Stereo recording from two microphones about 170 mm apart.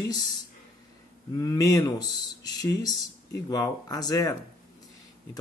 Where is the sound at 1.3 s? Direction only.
20° left (ahead or behind).